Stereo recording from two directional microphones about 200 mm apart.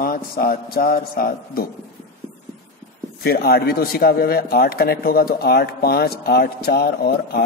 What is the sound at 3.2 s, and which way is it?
Speech, 50° left (ahead or behind).